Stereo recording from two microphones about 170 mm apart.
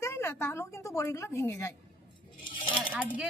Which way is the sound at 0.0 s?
15° left (ahead or behind).